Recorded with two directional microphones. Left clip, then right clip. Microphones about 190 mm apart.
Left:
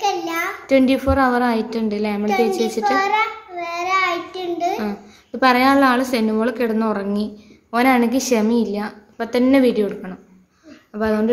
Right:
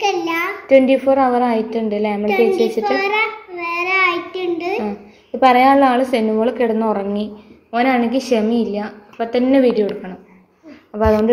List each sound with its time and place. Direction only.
0.0 s a sound: 65° left (ahead or behind)
0.7 s a child's voice: 20° left (ahead or behind)
3.2 s child singing: 60° left (ahead or behind)
5.4 s a woman's voice: 20° left (ahead or behind)
10.9 s a woman's voice: 10° left (ahead or behind)